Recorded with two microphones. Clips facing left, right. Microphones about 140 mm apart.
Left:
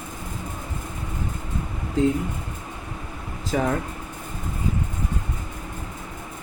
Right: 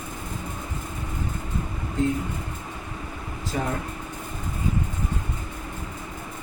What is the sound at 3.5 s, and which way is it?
Speech, 90° left.